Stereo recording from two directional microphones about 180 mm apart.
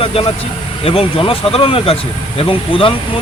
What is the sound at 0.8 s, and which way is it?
Speech, 30° left (ahead or behind).